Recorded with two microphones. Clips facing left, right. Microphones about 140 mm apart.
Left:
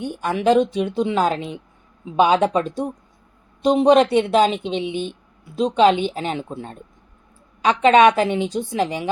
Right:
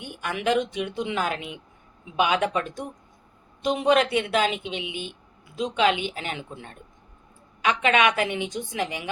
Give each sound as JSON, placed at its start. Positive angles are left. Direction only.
{"t": 0.0, "sound": "speech", "side_deg": 35}
{"t": 4.9, "sound": "speech", "side_deg": -10}
{"t": 5.5, "sound": "speech", "side_deg": 35}